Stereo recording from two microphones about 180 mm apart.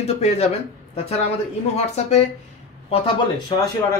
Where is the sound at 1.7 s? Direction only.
40° left (ahead or behind).